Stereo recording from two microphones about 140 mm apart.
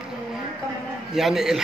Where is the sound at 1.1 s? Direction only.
Centre (ahead or behind).